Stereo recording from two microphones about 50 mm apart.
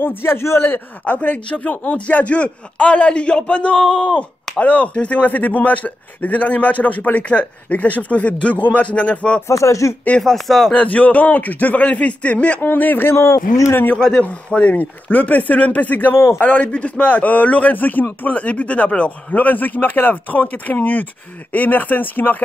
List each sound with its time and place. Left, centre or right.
0.0 s a man's voice: left
1.0 s speech: left
4.6 s speech: left
9.5 s speech: left
10.2 s speech: centre
10.7 s speech: left
12.6 s a man's voice: left
13.1 s speech: left
14.5 s speech: left
19.3 s speech: left